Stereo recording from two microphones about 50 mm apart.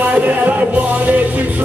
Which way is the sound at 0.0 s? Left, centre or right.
Right.